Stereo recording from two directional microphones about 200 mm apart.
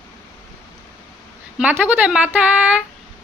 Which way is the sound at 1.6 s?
5° right (ahead or behind).